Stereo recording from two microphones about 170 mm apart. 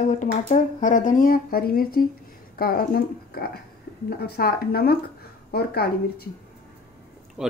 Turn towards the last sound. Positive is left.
turn(degrees=-5)  # may be behind; listen again after turning